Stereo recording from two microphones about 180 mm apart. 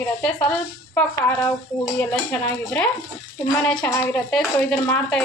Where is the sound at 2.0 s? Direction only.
5° left (ahead or behind).